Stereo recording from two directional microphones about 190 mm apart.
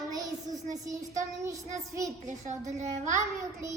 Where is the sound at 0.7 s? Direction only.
15° right (ahead or behind).